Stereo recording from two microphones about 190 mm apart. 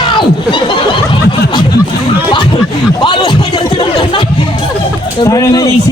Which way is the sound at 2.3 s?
25° left (ahead or behind).